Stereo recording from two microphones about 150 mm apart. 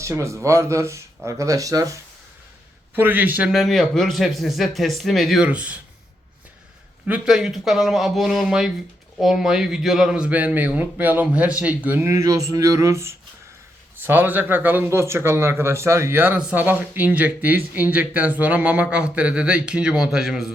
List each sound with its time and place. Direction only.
0.0 s speech: 20° right (ahead or behind)
2.9 s a man's voice: 15° right (ahead or behind)
7.1 s a man's voice: 5° right (ahead or behind)